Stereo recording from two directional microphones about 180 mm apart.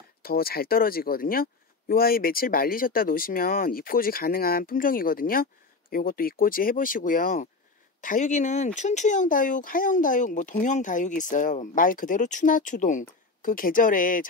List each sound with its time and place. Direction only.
0.2 s speech: 55° left (ahead or behind)